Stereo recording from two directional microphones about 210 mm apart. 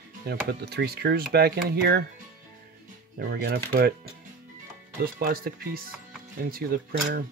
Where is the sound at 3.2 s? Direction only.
50° right (ahead or behind).